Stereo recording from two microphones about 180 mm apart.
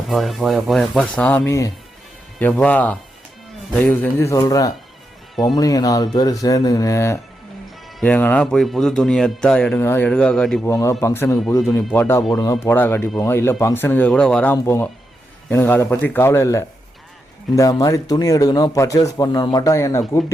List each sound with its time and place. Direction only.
0.1 s speech: centre (ahead or behind)
10.7 s speech: 15° left (ahead or behind)